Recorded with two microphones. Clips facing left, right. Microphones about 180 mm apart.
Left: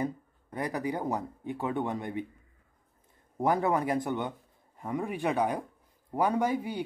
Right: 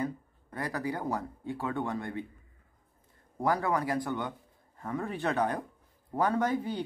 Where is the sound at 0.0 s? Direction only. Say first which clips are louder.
Left 1 dB; 15° left (ahead or behind).